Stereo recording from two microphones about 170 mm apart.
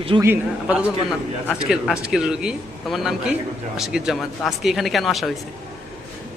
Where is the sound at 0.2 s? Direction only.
10° right (ahead or behind).